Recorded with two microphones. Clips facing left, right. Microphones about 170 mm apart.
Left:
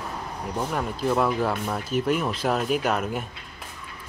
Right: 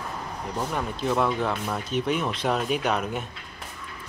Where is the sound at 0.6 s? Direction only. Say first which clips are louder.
Left 1 dB; centre (ahead or behind).